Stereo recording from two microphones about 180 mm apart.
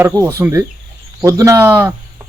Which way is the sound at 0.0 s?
15° right (ahead or behind).